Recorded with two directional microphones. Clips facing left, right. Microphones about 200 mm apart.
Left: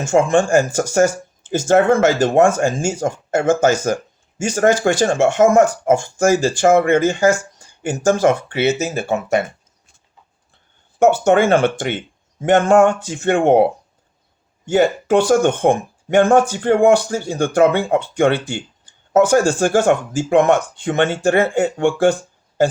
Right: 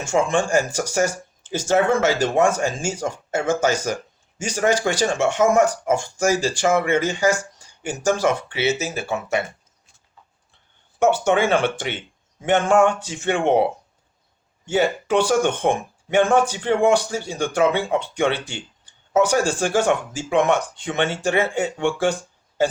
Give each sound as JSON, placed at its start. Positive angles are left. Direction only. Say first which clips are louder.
{"t": 0.1, "sound": "speech", "louder": "left 5 dB", "side_deg": 45}
{"t": 11.0, "sound": "speech", "louder": "left 5 dB", "side_deg": 50}
{"t": 14.7, "sound": "speech", "louder": "left 5 dB", "side_deg": 45}